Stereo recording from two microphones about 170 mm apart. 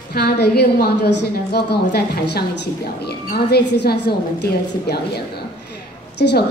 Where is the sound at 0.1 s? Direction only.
70° left (ahead or behind).